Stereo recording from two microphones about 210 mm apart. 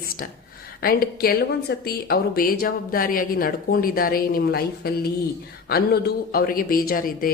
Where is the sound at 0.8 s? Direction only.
45° left (ahead or behind).